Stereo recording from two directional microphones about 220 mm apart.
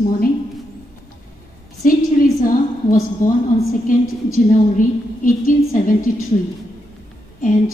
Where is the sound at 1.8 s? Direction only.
40° left (ahead or behind).